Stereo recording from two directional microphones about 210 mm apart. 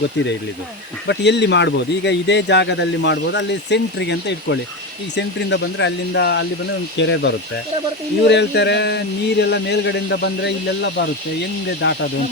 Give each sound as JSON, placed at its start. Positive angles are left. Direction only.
{"t": 1.0, "sound": "speech", "side_deg": 55}
{"t": 11.8, "sound": "speech", "side_deg": 55}